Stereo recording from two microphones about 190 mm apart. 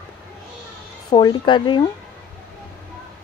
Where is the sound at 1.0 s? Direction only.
25° left (ahead or behind).